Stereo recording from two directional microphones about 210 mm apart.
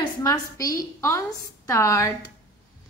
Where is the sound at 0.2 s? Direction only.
15° left (ahead or behind).